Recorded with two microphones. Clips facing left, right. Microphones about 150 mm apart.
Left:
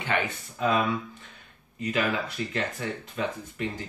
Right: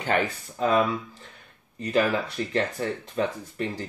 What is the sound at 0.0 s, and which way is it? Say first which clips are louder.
Speech: right 3 dB; 40° right (ahead or behind).